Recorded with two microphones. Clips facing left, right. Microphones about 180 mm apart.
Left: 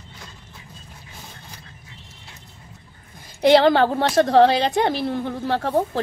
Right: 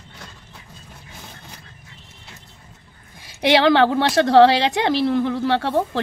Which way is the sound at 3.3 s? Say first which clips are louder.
Left 2 dB; 80° right.